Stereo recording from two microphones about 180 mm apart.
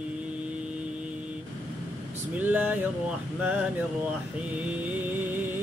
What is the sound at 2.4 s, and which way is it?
Music, 10° right (ahead or behind).